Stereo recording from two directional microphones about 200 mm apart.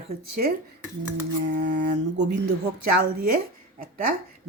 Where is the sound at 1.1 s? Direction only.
60° right (ahead or behind).